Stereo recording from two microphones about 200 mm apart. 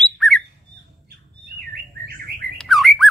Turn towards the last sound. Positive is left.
turn(degrees=0)  # may be behind; listen again after turning